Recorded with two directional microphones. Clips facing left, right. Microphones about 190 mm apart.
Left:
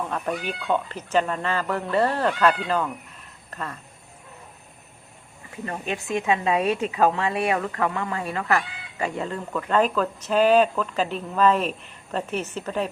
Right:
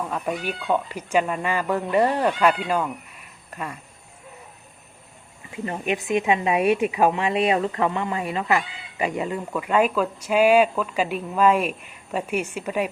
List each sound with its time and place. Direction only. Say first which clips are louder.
0.0 s a woman's voice: right 1 dB; 5° right (ahead or behind)
5.5 s a woman's voice: right 4 dB; 20° right (ahead or behind)